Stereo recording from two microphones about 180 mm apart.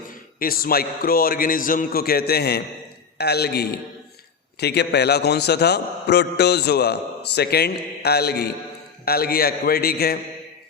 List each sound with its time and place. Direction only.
0.3 s a man's voice: 55° left (ahead or behind)